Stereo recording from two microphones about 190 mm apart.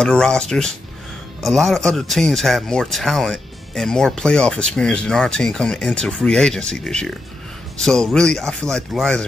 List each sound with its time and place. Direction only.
0.0 s speech: 5° left (ahead or behind)